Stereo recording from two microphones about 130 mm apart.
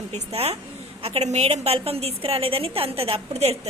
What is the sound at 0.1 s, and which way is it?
A woman's voice, 55° right (ahead or behind).